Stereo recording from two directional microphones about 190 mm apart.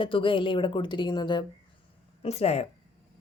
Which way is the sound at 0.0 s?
25° left (ahead or behind).